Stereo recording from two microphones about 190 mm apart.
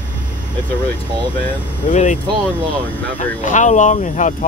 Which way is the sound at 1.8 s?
40° left (ahead or behind).